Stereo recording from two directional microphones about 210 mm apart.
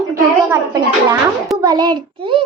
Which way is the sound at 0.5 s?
15° right (ahead or behind).